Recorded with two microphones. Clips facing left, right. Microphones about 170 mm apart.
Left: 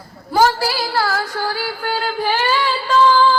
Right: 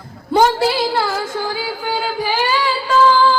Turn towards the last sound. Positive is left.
turn(degrees=-5)  # may be behind; listen again after turning